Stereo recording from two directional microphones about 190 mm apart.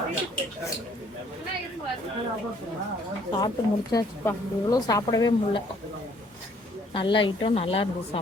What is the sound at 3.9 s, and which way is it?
Speech, 20° left (ahead or behind).